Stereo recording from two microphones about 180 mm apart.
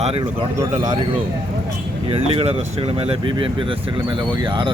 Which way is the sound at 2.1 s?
30° right (ahead or behind).